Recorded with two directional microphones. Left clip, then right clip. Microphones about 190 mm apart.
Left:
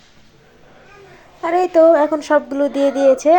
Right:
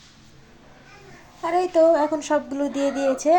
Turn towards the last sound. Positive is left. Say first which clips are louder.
# left 9 dB
turn(degrees=25)  # may be behind; listen again after turning